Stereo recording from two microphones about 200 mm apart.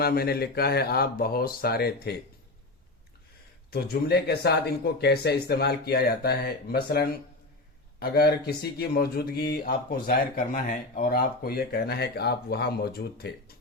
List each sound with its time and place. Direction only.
0.0 s speech: 50° left (ahead or behind)
3.7 s speech: 50° left (ahead or behind)